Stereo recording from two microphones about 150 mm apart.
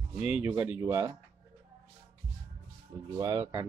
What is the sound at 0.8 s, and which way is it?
Speech, 25° right (ahead or behind).